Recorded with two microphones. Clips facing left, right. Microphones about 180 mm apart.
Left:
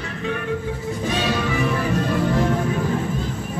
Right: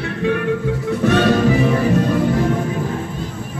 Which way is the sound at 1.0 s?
60° right (ahead or behind).